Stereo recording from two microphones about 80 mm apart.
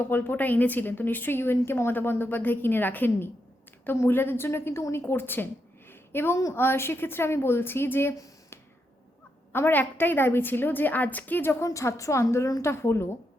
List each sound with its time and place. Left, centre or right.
0.0 s a woman's voice: left
5.9 s a sound: left
6.5 s a woman's voice: left
8.1 s a sound: left
9.5 s a woman's voice: left
11.6 s a woman's voice: left